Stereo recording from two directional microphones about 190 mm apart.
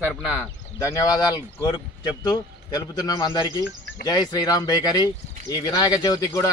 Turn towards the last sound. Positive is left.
turn(degrees=20)  # may be behind; listen again after turning